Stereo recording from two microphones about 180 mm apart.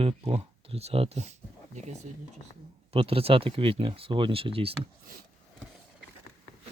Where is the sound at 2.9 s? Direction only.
30° right (ahead or behind).